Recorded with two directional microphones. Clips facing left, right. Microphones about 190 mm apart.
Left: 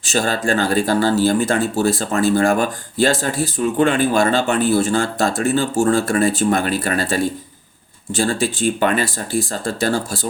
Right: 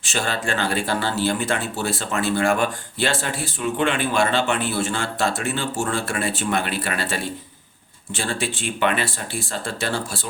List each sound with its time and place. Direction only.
0.0 s speech: 40° left (ahead or behind)